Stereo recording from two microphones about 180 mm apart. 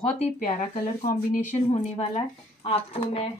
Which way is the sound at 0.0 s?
30° left (ahead or behind).